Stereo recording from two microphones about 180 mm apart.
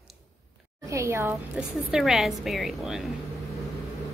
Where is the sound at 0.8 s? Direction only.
15° right (ahead or behind).